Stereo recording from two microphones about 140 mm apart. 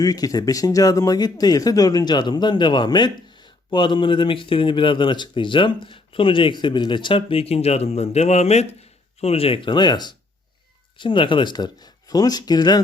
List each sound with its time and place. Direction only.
0.0 s speech: 25° left (ahead or behind)